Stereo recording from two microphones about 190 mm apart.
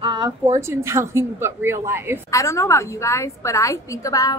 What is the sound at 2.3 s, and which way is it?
A woman's voice, 15° left (ahead or behind).